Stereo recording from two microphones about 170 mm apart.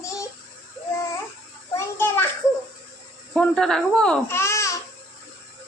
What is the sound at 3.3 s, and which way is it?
Speech, 5° left (ahead or behind).